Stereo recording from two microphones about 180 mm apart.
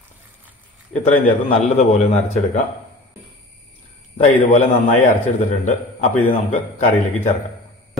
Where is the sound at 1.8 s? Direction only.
35° left (ahead or behind).